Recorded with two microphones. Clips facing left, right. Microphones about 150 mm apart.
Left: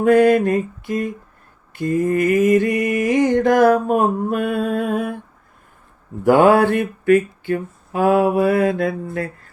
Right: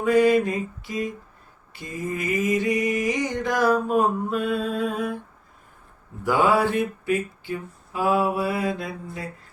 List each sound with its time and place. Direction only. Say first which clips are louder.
0.0 s mantra: left 5 dB; 55° left (ahead or behind)
6.2 s mantra: left 8 dB; 60° left (ahead or behind)